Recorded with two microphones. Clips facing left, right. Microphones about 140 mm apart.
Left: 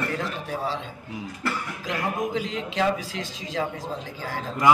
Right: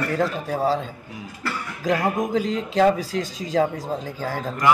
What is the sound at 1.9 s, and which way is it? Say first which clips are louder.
A man's voice: right 6 dB; 40° right (ahead or behind).